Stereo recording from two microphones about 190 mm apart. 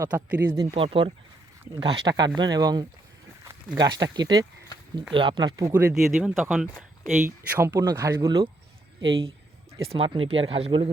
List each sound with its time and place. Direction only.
0.0 s speech: 10° right (ahead or behind)
0.5 s speech: 25° right (ahead or behind)
5.9 s speech: centre (ahead or behind)
7.3 s speech: 10° right (ahead or behind)
9.8 s speech: 30° right (ahead or behind)